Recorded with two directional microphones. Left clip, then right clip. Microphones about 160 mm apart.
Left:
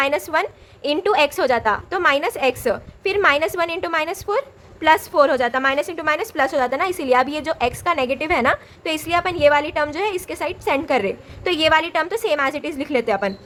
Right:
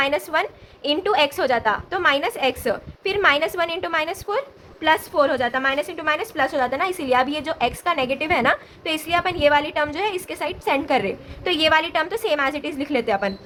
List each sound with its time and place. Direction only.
0.0 s a woman's voice: 40° left (ahead or behind)